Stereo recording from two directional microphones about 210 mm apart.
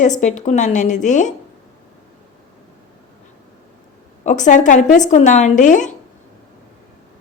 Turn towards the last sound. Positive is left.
turn(degrees=35)  # may be behind; listen again after turning